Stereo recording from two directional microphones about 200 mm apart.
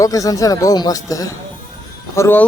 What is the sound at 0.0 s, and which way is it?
Speech, 15° left (ahead or behind).